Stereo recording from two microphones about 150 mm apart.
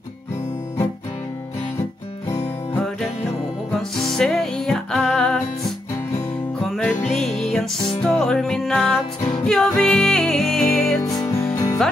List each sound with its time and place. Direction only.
3.7 s music: centre (ahead or behind)
7.1 s music: centre (ahead or behind)
11.1 s music: 20° left (ahead or behind)